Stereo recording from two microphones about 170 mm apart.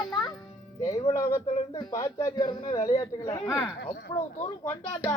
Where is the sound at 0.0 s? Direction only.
25° left (ahead or behind).